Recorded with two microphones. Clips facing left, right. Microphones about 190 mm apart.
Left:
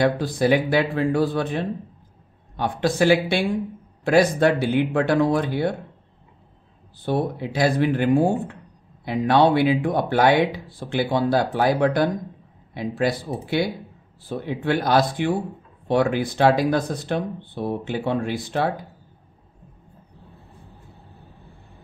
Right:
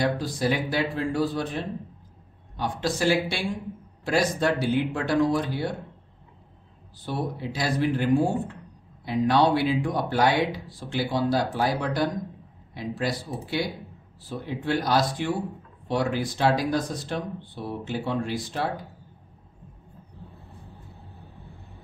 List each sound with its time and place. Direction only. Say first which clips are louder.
0.0 s speech: left 5 dB; 60° left (ahead or behind)
7.1 s speech: left 6 dB; 60° left (ahead or behind)